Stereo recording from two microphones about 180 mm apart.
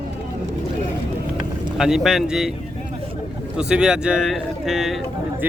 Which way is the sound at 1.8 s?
Centre (ahead or behind).